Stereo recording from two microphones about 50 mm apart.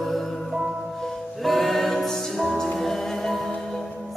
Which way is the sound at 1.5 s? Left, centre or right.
Centre.